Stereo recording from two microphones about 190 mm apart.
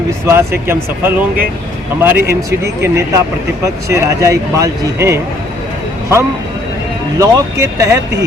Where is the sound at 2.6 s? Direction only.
15° right (ahead or behind).